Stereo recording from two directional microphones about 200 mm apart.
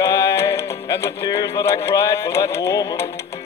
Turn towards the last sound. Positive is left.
turn(degrees=15)  # may be behind; listen again after turning